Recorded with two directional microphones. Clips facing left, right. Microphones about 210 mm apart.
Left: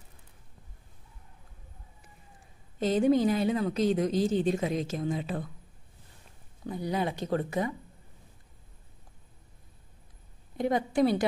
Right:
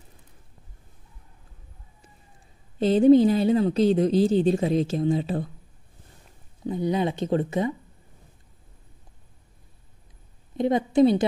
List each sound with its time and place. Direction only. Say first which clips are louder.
2.8 s a woman's voice: right 8 dB; 30° right (ahead or behind)
6.6 s a woman's voice: right 6 dB; 20° right (ahead or behind)
10.6 s a woman's voice: right 6 dB; 20° right (ahead or behind)